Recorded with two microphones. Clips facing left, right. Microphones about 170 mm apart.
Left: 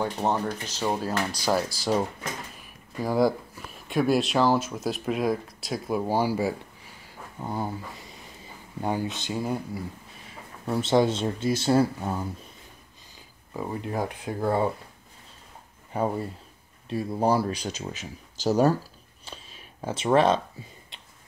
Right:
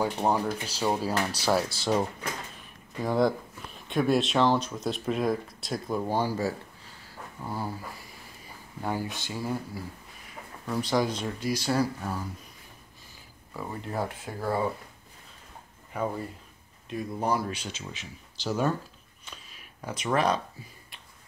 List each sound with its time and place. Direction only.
0.3 s speech: 10° right (ahead or behind)
1.8 s speech: 10° left (ahead or behind)
10.7 s speech: 25° left (ahead or behind)
13.5 s speech: 15° left (ahead or behind)
15.9 s speech: 30° left (ahead or behind)
19.2 s a sound: 30° left (ahead or behind)